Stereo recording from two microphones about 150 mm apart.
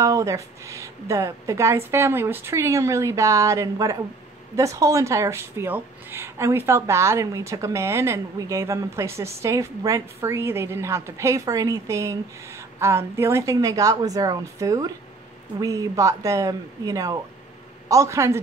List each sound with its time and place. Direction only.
0.0 s speech: 20° right (ahead or behind)